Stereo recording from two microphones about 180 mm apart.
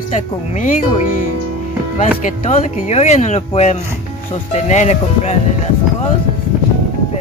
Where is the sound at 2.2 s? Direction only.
40° left (ahead or behind).